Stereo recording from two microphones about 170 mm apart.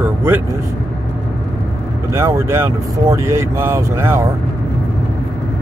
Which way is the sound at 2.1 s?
15° right (ahead or behind).